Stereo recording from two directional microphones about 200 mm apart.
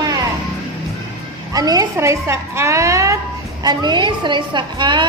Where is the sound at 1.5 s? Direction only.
20° right (ahead or behind).